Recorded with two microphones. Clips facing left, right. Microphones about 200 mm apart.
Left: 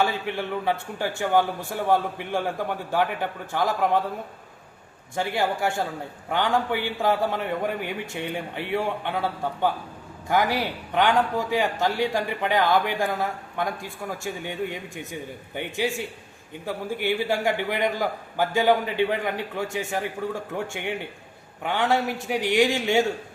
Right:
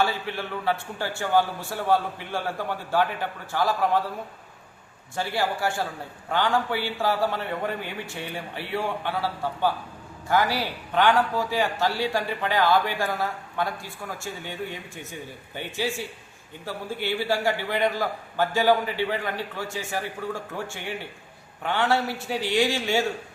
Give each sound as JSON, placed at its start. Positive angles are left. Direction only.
{"t": 0.0, "sound": "a man's voice", "side_deg": 15}
{"t": 5.1, "sound": "a man's voice", "side_deg": 20}
{"t": 21.6, "sound": "a man's voice", "side_deg": 15}